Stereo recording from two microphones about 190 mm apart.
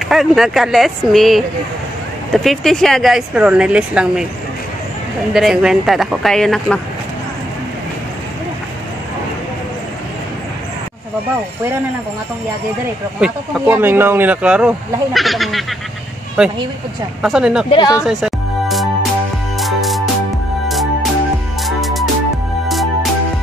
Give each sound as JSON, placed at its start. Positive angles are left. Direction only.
{"t": 0.0, "sound": "speech", "side_deg": 0}
{"t": 5.3, "sound": "speech", "side_deg": -5}
{"t": 13.2, "sound": "speech", "side_deg": -10}
{"t": 17.6, "sound": "speech", "side_deg": 20}
{"t": 18.0, "sound": "music", "side_deg": 0}